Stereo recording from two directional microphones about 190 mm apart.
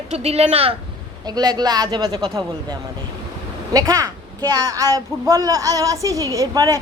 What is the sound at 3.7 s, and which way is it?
A woman's voice, 15° right (ahead or behind).